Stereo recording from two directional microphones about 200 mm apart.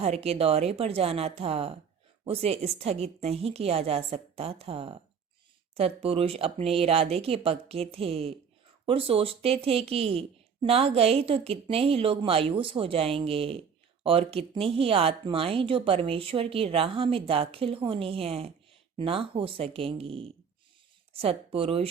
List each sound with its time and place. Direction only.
0.0 s a woman's voice: 30° right (ahead or behind)